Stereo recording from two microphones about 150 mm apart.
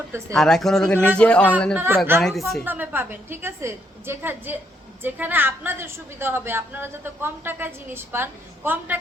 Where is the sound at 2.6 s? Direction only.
10° right (ahead or behind).